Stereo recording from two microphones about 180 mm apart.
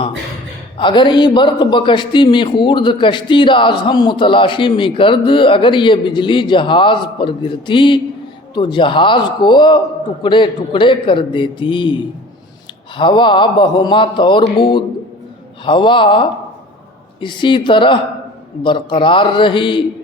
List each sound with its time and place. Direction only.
0.8 s a man's voice: 25° left (ahead or behind)
13.0 s a man's voice: 25° left (ahead or behind)